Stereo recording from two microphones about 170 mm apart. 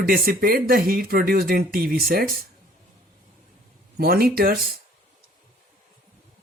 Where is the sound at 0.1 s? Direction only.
60° right (ahead or behind).